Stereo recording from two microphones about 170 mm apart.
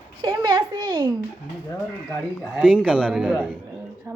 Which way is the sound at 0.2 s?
25° right (ahead or behind).